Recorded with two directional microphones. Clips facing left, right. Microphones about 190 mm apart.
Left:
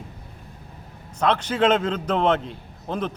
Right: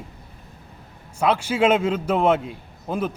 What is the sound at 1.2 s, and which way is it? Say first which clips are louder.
Speech: right 1 dB; 10° right (ahead or behind).